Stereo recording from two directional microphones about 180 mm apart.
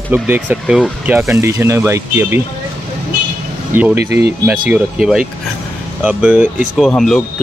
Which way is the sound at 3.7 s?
10° right (ahead or behind).